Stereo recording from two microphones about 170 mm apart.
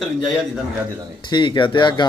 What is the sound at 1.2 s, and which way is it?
Speech, 25° left (ahead or behind).